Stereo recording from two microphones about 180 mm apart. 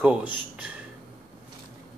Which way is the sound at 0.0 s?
5° right (ahead or behind).